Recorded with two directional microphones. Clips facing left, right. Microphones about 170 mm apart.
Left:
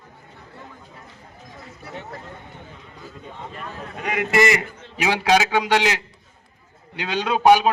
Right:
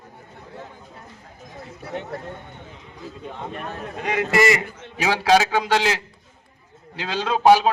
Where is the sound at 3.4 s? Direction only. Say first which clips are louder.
Right 3 dB; 60° right (ahead or behind).